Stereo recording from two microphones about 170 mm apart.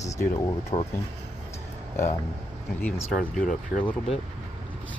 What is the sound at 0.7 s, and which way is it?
Speech, 40° left (ahead or behind).